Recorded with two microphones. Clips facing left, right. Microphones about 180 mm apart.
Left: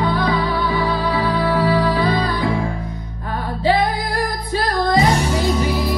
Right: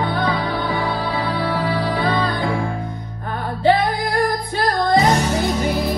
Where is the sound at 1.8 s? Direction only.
55° right (ahead or behind).